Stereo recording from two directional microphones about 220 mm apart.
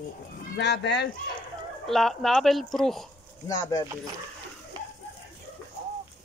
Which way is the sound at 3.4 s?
15° left (ahead or behind).